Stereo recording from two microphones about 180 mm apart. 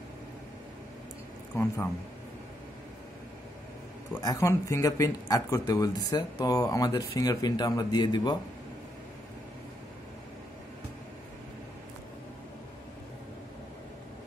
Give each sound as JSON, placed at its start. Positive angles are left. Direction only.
{"t": 1.5, "sound": "speech", "side_deg": 15}
{"t": 4.1, "sound": "speech", "side_deg": 20}